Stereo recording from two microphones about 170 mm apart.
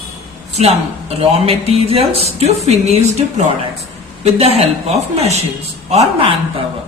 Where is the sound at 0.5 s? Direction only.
40° right (ahead or behind).